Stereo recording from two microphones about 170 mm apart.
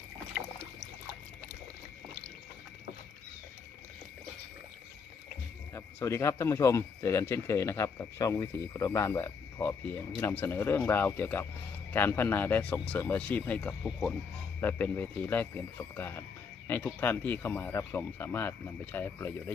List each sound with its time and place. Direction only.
5.7 s speech: 15° left (ahead or behind)